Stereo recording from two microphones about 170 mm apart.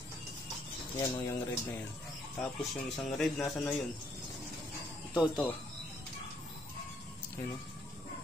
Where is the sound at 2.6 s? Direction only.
Centre (ahead or behind).